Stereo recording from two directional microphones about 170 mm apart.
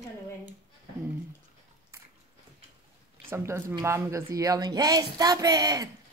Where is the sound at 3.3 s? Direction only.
15° right (ahead or behind).